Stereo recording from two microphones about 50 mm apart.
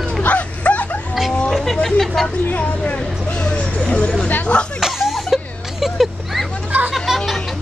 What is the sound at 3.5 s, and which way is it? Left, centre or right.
Vehicle, left.